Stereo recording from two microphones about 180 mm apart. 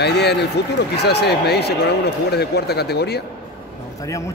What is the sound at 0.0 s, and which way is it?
Speech, 65° left (ahead or behind).